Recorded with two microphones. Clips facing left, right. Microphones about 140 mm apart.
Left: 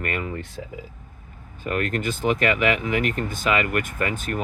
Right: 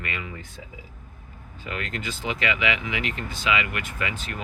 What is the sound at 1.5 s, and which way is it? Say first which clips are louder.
Speech: left 8 dB; 50° left (ahead or behind).